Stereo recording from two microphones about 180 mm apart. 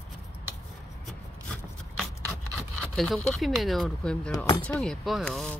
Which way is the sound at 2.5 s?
5° left (ahead or behind).